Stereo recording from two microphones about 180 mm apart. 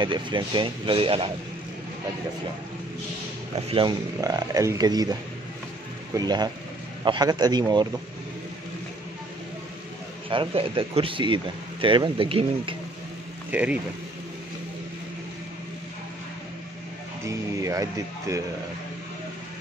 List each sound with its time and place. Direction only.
0.0 s speech: 25° right (ahead or behind)
3.5 s speech: 30° right (ahead or behind)
6.1 s speech: 20° right (ahead or behind)
10.3 s speech: 30° right (ahead or behind)
13.5 s speech: 5° right (ahead or behind)
17.2 s speech: 15° right (ahead or behind)